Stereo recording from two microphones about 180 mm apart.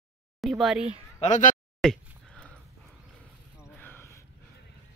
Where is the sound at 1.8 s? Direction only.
5° left (ahead or behind).